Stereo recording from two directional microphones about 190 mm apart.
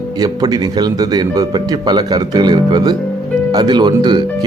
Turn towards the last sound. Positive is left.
turn(degrees=-25)  # may be behind; listen again after turning